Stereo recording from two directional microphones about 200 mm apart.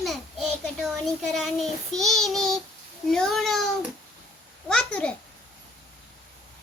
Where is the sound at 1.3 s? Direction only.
Centre (ahead or behind).